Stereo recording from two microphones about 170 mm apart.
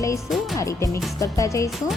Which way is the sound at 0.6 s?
20° left (ahead or behind).